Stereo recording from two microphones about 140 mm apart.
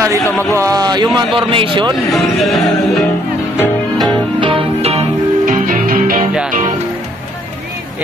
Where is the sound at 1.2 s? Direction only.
40° right (ahead or behind).